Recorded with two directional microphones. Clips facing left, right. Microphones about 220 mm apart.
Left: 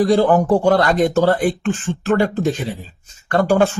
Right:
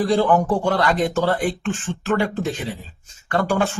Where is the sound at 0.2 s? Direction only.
45° left (ahead or behind).